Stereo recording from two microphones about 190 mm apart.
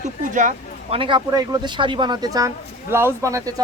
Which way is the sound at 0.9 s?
25° right (ahead or behind).